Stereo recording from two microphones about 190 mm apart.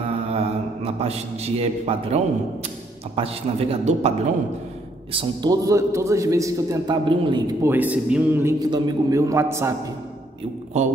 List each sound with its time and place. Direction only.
0.3 s a man's voice: 30° right (ahead or behind)
5.1 s a man's voice: 25° right (ahead or behind)
7.7 s a man's voice: 10° right (ahead or behind)